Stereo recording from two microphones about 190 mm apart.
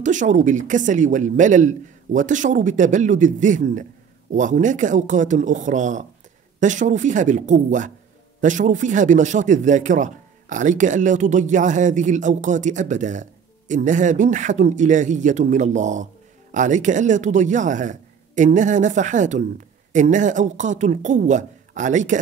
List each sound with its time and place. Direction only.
0.0 s speech: 40° right (ahead or behind)